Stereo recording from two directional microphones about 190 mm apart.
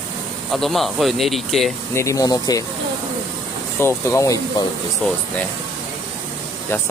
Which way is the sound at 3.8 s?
15° left (ahead or behind).